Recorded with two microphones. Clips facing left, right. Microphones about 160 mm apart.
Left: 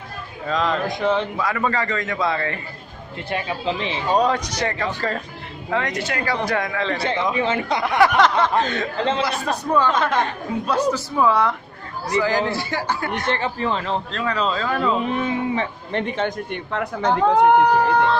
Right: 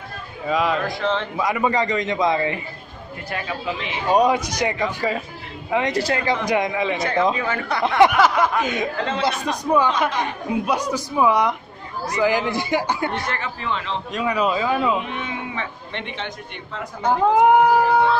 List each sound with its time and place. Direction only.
0.5 s a man's voice: 10° right (ahead or behind)
0.8 s speech: 15° left (ahead or behind)
1.3 s a man's voice: 15° right (ahead or behind)
3.3 s speech: 25° left (ahead or behind)
4.1 s a man's voice: 10° right (ahead or behind)
5.9 s speech: 30° right (ahead or behind)
6.4 s a man's voice: 15° right (ahead or behind)
7.0 s speech: 25° left (ahead or behind)
8.2 s a man's voice: 10° right (ahead or behind)
13.3 s speech: 35° left (ahead or behind)
14.1 s a man's voice: 10° right (ahead or behind)
15.0 s speech: 35° left (ahead or behind)
17.0 s speech: 5° right (ahead or behind)